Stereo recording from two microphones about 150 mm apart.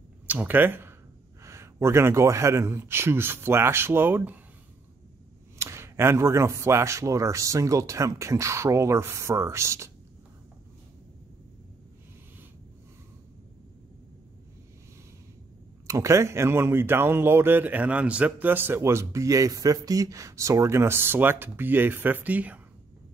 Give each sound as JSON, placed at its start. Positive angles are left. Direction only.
{"t": 0.3, "sound": "speech", "side_deg": -10}
{"t": 5.6, "sound": "speech", "side_deg": -15}
{"t": 15.9, "sound": "speech", "side_deg": -20}